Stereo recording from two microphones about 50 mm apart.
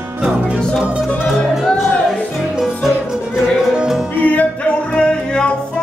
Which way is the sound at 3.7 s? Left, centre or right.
Centre.